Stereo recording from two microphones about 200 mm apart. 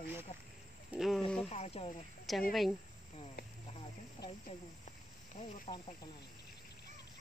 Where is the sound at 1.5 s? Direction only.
30° left (ahead or behind).